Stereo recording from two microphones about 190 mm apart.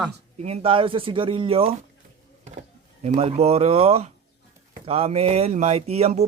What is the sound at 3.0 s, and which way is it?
Speech, 35° right (ahead or behind).